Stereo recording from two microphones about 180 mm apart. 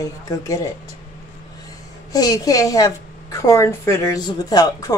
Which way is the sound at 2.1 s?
20° left (ahead or behind).